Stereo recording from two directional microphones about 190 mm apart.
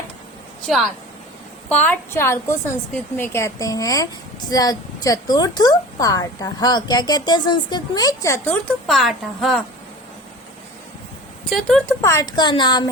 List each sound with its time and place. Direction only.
1.7 s a woman's voice: 10° left (ahead or behind)
8.9 s a woman's voice: centre (ahead or behind)
11.4 s a woman's voice: centre (ahead or behind)
12.0 s a woman's voice: 20° left (ahead or behind)